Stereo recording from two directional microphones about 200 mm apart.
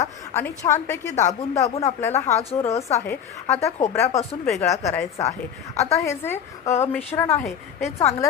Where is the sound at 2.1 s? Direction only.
35° left (ahead or behind).